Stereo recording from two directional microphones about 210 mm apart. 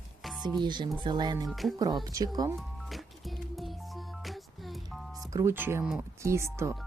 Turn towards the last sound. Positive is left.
turn(degrees=-15)  # may be behind; listen again after turning